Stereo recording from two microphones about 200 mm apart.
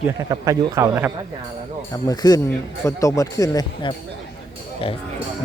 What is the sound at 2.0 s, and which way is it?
Speech, 20° left (ahead or behind).